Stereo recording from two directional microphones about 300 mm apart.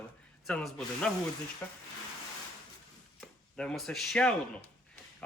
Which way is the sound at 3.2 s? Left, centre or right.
Centre.